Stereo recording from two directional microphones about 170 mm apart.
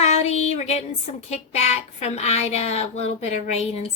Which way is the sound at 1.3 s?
40° left (ahead or behind).